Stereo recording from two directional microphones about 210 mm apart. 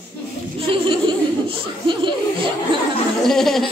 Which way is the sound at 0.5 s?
25° right (ahead or behind).